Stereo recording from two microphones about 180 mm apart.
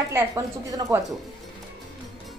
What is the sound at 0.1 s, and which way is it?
Speech, 20° right (ahead or behind).